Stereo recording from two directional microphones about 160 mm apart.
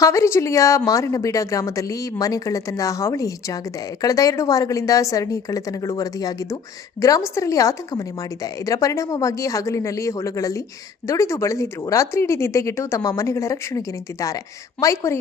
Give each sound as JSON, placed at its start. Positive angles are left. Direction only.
{"t": 0.0, "sound": "a woman's voice", "side_deg": 20}